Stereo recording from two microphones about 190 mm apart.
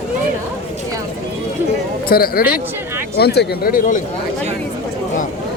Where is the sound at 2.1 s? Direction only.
50° left (ahead or behind).